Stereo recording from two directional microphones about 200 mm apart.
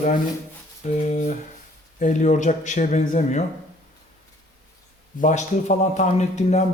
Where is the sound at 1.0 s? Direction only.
35° left (ahead or behind).